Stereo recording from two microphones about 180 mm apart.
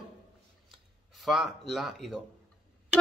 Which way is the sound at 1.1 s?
Centre (ahead or behind).